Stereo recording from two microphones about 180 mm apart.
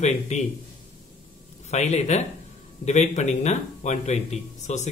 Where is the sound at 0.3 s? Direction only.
35° left (ahead or behind).